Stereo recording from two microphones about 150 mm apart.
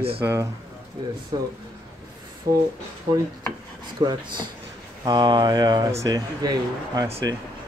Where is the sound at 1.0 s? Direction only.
30° right (ahead or behind).